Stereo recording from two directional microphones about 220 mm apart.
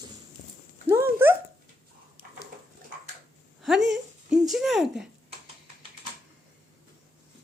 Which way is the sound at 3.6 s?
Centre (ahead or behind).